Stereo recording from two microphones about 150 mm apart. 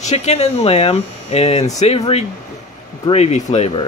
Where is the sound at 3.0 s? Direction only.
45° left (ahead or behind).